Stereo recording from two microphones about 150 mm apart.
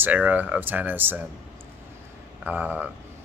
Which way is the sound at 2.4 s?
10° right (ahead or behind).